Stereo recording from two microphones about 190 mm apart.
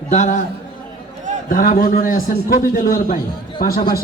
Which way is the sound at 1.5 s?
50° left (ahead or behind).